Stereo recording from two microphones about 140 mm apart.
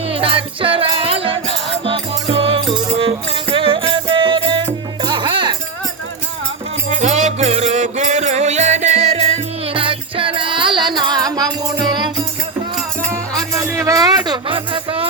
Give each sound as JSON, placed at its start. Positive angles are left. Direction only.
{"t": 0.1, "sound": "music", "side_deg": -40}
{"t": 6.9, "sound": "music", "side_deg": -55}
{"t": 13.1, "sound": "music", "side_deg": -20}